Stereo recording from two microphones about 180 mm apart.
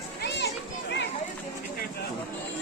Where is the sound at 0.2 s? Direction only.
70° left (ahead or behind).